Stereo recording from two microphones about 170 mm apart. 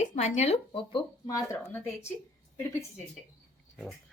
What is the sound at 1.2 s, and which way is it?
Speech, 20° left (ahead or behind).